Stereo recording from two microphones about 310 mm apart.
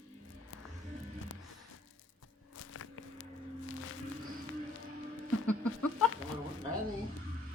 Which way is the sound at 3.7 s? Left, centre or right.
Left.